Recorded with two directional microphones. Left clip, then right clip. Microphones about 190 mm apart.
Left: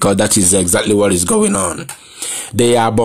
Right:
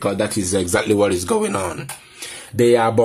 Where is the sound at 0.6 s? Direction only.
25° left (ahead or behind).